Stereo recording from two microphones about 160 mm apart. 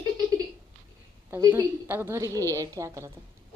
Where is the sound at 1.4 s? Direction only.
20° right (ahead or behind).